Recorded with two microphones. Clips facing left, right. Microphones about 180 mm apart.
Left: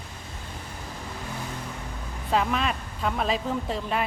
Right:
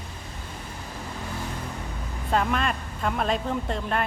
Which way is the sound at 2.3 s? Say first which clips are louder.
Even; centre (ahead or behind).